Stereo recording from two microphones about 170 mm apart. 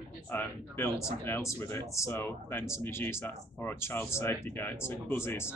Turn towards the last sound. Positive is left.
turn(degrees=15)  # may be behind; listen again after turning